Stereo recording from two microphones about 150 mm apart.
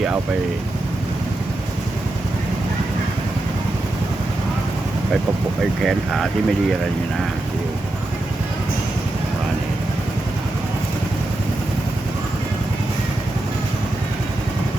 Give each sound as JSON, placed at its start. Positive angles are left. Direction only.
{"t": 5.8, "sound": "speech", "side_deg": 0}